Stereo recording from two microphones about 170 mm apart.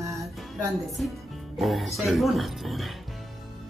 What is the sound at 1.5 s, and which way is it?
Speech, centre (ahead or behind).